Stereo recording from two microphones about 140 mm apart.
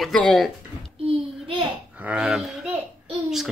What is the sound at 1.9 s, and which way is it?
Speech, 10° right (ahead or behind).